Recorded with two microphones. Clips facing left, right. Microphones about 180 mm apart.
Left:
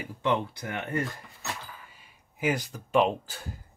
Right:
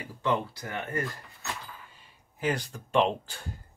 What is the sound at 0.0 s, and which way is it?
Speech, 20° left (ahead or behind).